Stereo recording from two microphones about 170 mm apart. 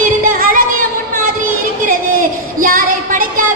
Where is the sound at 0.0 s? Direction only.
55° right (ahead or behind).